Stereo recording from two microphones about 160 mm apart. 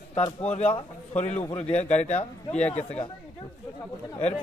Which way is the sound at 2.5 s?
10° left (ahead or behind).